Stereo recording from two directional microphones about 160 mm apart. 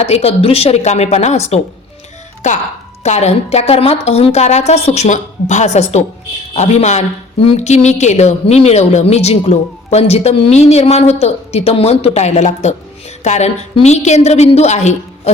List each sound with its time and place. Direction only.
0.0 s a woman's voice: 40° left (ahead or behind)
3.0 s a woman's voice: 45° left (ahead or behind)